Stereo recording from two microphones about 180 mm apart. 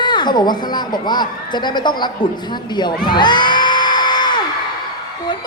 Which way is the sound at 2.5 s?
25° left (ahead or behind).